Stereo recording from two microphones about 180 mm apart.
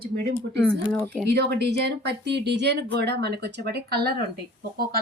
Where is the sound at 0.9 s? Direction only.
5° left (ahead or behind).